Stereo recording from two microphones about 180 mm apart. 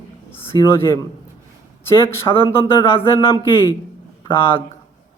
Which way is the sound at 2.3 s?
30° left (ahead or behind).